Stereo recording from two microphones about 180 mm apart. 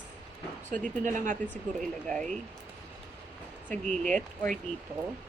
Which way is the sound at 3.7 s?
5° left (ahead or behind).